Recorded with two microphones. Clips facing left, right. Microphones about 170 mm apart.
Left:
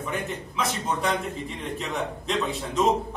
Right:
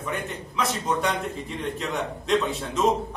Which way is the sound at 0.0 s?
Centre (ahead or behind).